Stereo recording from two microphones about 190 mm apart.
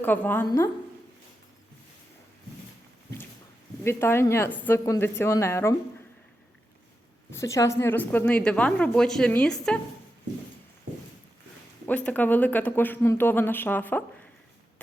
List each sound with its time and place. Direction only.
0.0 s a woman's voice: 10° left (ahead or behind)
3.8 s a woman's voice: 15° left (ahead or behind)
7.3 s a woman's voice: 15° left (ahead or behind)
11.9 s a woman's voice: 5° left (ahead or behind)